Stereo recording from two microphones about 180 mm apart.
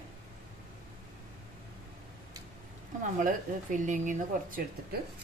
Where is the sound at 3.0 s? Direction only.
45° right (ahead or behind).